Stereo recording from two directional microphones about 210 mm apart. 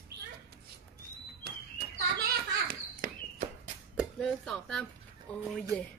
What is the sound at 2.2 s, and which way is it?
Children playing, 40° right (ahead or behind).